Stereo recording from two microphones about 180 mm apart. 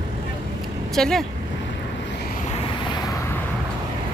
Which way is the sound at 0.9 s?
Centre (ahead or behind).